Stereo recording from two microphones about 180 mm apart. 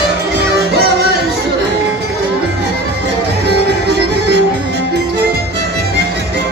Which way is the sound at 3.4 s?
70° right (ahead or behind).